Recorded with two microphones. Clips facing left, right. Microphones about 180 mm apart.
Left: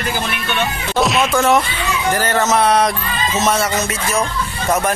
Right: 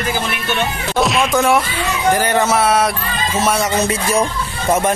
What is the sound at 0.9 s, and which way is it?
Speech, centre (ahead or behind).